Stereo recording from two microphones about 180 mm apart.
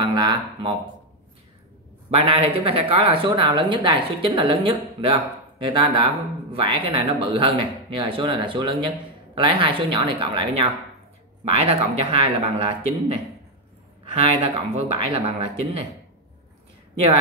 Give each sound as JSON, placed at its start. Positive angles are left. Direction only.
{"t": 0.0, "sound": "speech", "side_deg": -25}
{"t": 2.0, "sound": "a man's voice", "side_deg": -35}